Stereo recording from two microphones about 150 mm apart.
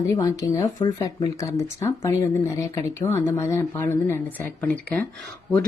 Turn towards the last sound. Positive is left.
turn(degrees=5)  # may be behind; listen again after turning